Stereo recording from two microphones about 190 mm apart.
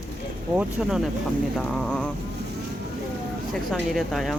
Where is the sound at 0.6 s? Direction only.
5° right (ahead or behind).